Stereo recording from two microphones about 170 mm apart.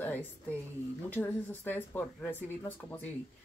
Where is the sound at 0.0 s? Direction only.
10° left (ahead or behind).